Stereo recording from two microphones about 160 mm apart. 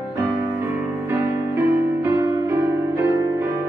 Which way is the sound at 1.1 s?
15° right (ahead or behind).